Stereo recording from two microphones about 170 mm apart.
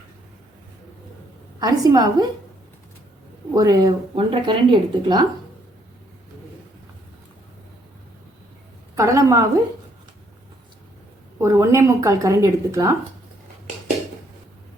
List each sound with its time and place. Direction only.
1.5 s speech: 20° right (ahead or behind)
3.5 s speech: 20° right (ahead or behind)
9.0 s speech: 15° right (ahead or behind)
11.3 s speech: 15° right (ahead or behind)